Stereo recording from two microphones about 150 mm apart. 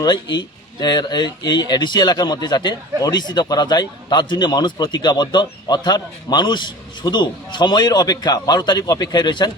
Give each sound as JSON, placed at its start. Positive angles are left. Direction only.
{"t": 0.0, "sound": "speech", "side_deg": 30}